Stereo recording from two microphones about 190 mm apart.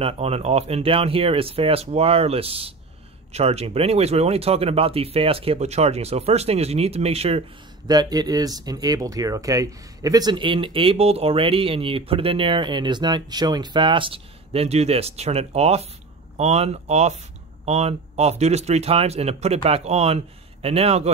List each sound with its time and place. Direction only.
0.0 s speech: 30° right (ahead or behind)